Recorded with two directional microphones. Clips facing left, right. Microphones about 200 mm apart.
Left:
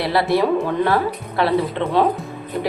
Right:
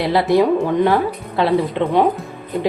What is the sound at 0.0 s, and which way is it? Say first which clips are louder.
A woman's voice: right 3 dB; 20° right (ahead or behind).